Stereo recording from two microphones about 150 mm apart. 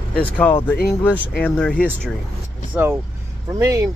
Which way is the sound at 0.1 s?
10° left (ahead or behind).